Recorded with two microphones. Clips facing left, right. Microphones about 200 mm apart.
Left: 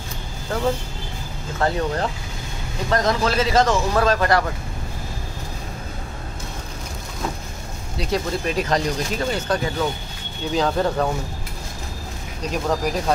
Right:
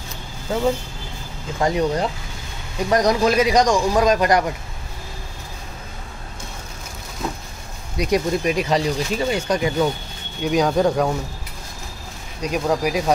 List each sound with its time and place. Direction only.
1.6 s speech: 15° right (ahead or behind)
8.0 s speech: 15° right (ahead or behind)
12.4 s speech: 10° right (ahead or behind)